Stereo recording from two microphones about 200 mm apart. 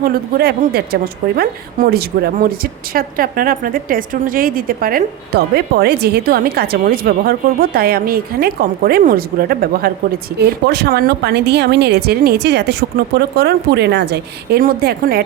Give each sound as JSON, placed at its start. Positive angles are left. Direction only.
{"t": 0.0, "sound": "a woman's voice", "side_deg": -50}